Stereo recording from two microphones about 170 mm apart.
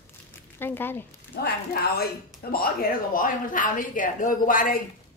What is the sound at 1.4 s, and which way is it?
Speech, 65° left (ahead or behind).